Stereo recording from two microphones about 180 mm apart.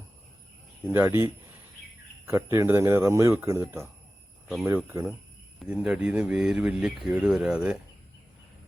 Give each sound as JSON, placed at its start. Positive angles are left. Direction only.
{"t": 0.9, "sound": "speech", "side_deg": -15}
{"t": 4.9, "sound": "speech", "side_deg": -15}
{"t": 5.5, "sound": "speech", "side_deg": -5}